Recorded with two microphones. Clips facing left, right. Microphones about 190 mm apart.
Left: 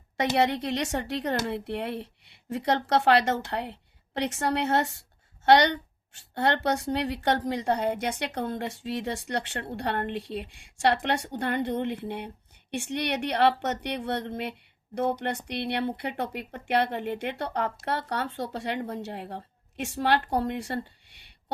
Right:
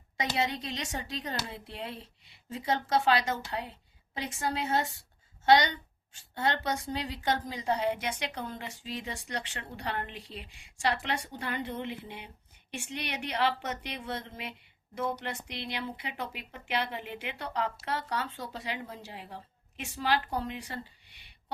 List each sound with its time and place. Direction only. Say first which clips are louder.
0.3 s a woman's voice: left 8 dB; 65° left (ahead or behind)